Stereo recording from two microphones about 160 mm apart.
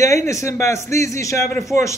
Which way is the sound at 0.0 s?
20° left (ahead or behind).